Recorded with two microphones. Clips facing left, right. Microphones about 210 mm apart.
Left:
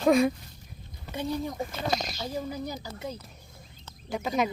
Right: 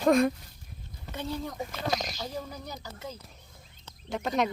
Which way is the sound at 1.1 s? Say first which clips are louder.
Left 4 dB; 15° left (ahead or behind).